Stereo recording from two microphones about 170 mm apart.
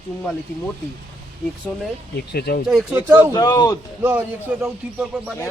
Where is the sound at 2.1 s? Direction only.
70° left (ahead or behind).